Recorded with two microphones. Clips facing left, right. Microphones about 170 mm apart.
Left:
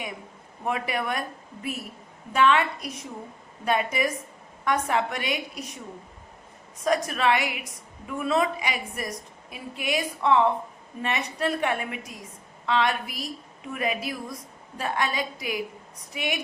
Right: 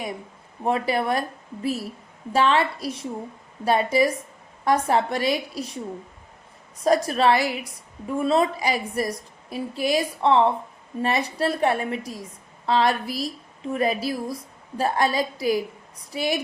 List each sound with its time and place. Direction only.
0.6 s a woman's voice: 35° right (ahead or behind)
6.8 s a woman's voice: 35° right (ahead or behind)